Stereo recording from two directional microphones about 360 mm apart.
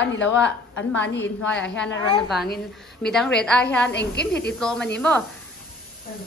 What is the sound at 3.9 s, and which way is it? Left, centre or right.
Speech, left.